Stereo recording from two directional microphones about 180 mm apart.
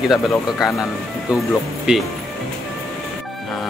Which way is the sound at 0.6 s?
Centre (ahead or behind).